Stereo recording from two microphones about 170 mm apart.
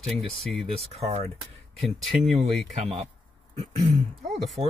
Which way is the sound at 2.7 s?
40° right (ahead or behind).